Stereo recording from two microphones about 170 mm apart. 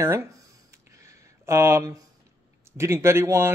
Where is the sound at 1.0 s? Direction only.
15° right (ahead or behind).